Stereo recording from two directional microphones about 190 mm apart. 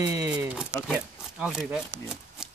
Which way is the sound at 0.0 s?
15° right (ahead or behind).